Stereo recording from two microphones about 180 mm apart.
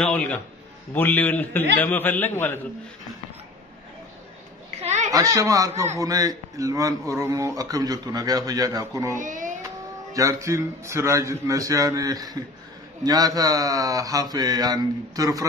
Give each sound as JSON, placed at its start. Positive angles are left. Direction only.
{"t": 0.0, "sound": "a man's voice", "side_deg": 5}
{"t": 4.8, "sound": "children playing", "side_deg": -40}
{"t": 5.1, "sound": "a man's voice", "side_deg": -20}
{"t": 9.1, "sound": "a sound", "side_deg": -45}
{"t": 10.1, "sound": "a man's voice", "side_deg": -15}